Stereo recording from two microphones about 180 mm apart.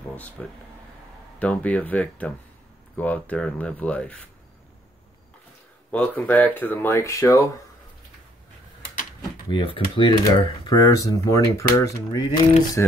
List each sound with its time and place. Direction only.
0.4 s speech: 5° left (ahead or behind)
5.9 s speech: 10° left (ahead or behind)
9.5 s speech: 30° left (ahead or behind); by 12.9 s 10° left (ahead or behind)